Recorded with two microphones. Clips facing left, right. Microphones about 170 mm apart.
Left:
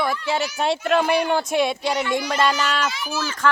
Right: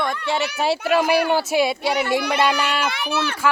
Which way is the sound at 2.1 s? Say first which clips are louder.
Right 1 dB; 65° right (ahead or behind).